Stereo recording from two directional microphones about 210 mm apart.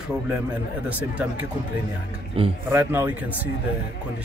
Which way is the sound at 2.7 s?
10° right (ahead or behind).